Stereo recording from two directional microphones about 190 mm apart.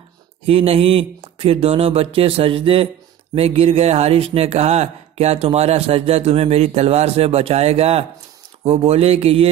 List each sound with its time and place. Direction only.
0.5 s speech: 30° right (ahead or behind)